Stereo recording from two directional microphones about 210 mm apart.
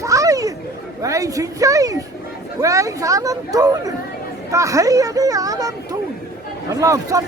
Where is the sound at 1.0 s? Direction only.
15° right (ahead or behind).